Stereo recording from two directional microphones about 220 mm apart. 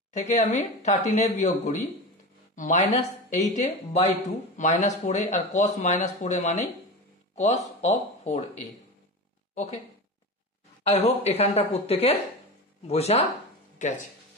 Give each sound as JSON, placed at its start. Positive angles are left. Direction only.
{"t": 0.1, "sound": "speech", "side_deg": 30}
{"t": 10.8, "sound": "a woman's voice", "side_deg": 30}